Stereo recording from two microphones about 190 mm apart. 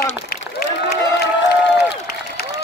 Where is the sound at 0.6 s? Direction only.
55° left (ahead or behind).